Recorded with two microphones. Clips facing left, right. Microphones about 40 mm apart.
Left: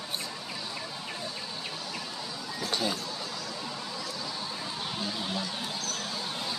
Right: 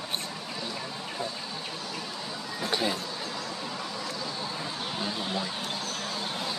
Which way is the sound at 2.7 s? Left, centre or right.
Centre.